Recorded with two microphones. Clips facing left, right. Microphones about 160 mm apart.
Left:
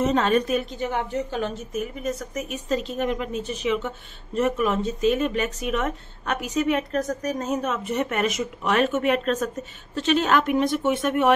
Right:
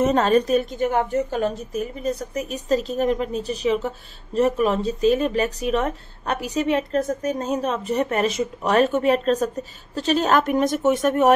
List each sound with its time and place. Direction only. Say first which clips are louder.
0.0 s a woman's voice: right 3 dB; 40° right (ahead or behind)